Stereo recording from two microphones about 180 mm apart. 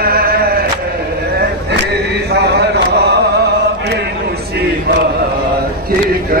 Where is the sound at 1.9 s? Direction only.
60° right (ahead or behind).